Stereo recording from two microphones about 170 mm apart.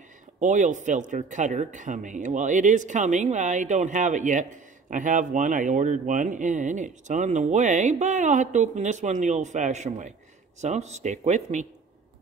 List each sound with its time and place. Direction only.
0.4 s speech: 45° right (ahead or behind)